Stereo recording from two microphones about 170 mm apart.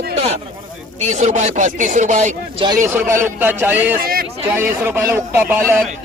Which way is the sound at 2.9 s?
15° right (ahead or behind).